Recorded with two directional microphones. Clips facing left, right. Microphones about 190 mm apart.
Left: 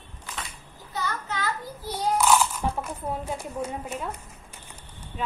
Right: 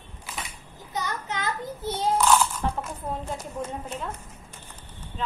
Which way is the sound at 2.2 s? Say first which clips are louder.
Left 1 dB; 10° left (ahead or behind).